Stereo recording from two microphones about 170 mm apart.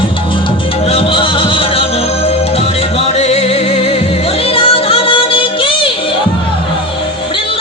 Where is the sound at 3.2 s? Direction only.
40° left (ahead or behind).